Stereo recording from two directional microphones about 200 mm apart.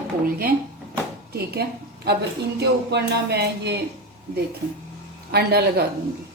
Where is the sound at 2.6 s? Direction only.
55° right (ahead or behind).